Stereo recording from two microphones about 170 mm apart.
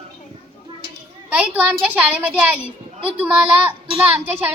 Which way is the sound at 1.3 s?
10° right (ahead or behind).